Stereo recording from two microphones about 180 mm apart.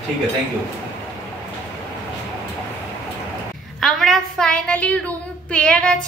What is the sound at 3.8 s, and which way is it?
A woman's voice, centre (ahead or behind).